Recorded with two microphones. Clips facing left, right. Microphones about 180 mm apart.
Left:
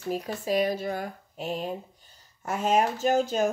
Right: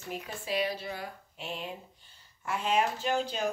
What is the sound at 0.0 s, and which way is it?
Speech, 40° left (ahead or behind).